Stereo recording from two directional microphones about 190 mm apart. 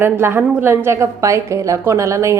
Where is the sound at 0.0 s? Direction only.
10° right (ahead or behind).